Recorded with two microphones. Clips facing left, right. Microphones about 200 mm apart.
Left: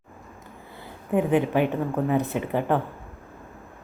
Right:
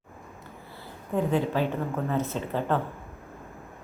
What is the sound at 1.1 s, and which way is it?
A woman's voice, 15° left (ahead or behind).